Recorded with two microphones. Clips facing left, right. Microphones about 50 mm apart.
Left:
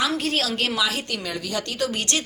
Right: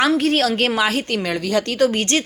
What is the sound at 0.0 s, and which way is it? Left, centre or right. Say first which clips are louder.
A woman's voice: right 7 dB; right.